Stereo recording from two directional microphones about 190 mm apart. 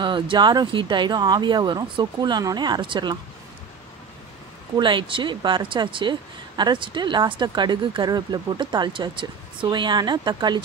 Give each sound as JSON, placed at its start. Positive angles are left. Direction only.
{"t": 0.0, "sound": "speech", "side_deg": -25}
{"t": 4.7, "sound": "speech", "side_deg": -25}